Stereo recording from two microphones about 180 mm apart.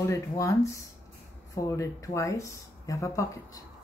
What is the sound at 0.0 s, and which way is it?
Speech, 15° left (ahead or behind).